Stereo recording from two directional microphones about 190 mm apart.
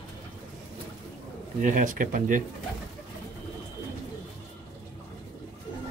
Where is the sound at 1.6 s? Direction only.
45° right (ahead or behind).